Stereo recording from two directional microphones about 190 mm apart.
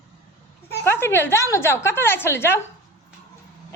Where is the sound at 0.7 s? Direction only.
10° left (ahead or behind).